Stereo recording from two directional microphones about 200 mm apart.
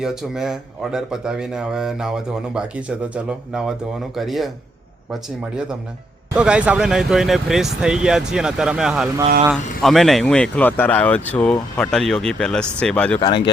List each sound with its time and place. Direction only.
0.0 s a man's voice: 5° right (ahead or behind)
6.3 s a man's voice: 5° right (ahead or behind)
13.1 s speech: 20° left (ahead or behind)